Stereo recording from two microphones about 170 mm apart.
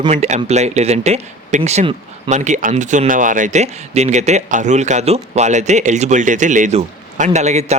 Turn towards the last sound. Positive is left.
turn(degrees=-40)  # may be behind; listen again after turning